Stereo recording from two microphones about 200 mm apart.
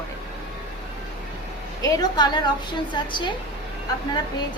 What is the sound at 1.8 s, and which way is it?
A woman's voice, 20° left (ahead or behind).